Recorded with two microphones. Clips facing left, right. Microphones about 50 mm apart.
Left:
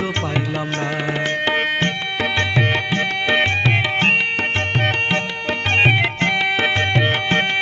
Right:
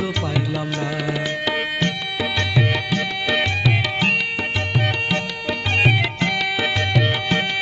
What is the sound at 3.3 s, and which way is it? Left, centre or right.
Tabla, left.